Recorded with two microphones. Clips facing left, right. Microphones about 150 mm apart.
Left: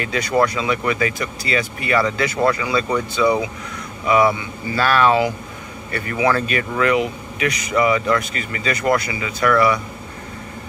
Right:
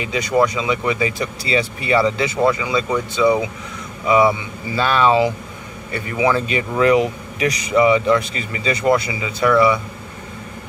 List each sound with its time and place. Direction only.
0.0 s speech: 15° right (ahead or behind)
1.1 s speech: 30° right (ahead or behind)
4.7 s speech: 20° right (ahead or behind)
7.7 s speech: 25° right (ahead or behind)